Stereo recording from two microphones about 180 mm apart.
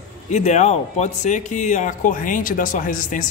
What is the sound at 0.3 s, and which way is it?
Speech, 40° left (ahead or behind).